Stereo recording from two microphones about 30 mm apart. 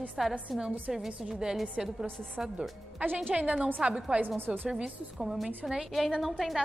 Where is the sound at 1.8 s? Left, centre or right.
Right.